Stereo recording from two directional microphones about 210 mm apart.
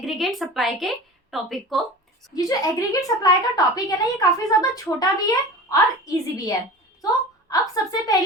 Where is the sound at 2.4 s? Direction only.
15° left (ahead or behind).